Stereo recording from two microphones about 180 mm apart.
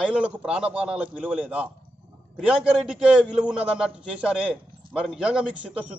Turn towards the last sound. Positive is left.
turn(degrees=-5)  # may be behind; listen again after turning